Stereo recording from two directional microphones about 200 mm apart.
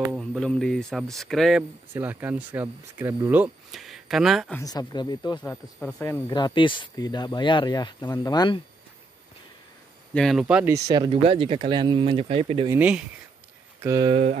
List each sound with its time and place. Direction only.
0.2 s speech: 5° left (ahead or behind)
2.0 s speech: 10° right (ahead or behind)
4.6 s speech: 20° left (ahead or behind)
5.4 s speech: 10° left (ahead or behind)
10.1 s speech: centre (ahead or behind); by 12.6 s 30° right (ahead or behind)
12.6 s speech: 10° right (ahead or behind)
13.8 s speech: 20° right (ahead or behind)
14.1 s a sound: 35° right (ahead or behind)